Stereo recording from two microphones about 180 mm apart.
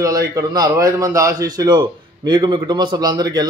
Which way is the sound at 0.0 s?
20° right (ahead or behind).